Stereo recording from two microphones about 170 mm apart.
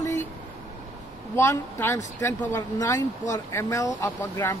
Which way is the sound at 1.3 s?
15° left (ahead or behind).